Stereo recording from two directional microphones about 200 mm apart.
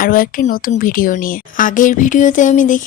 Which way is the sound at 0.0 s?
45° left (ahead or behind).